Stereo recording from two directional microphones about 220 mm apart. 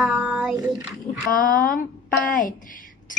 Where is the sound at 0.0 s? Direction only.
5° right (ahead or behind).